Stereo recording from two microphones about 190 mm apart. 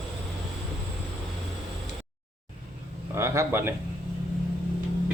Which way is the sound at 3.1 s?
15° right (ahead or behind).